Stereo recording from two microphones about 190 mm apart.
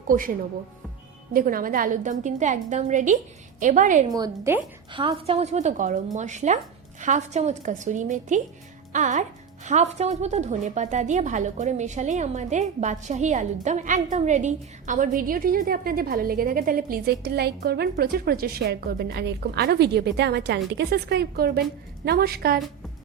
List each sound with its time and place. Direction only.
0.1 s a woman's voice: 45° right (ahead or behind)
4.1 s speech: 15° right (ahead or behind)
4.9 s a woman's voice: 30° right (ahead or behind); by 22.6 s 55° right (ahead or behind)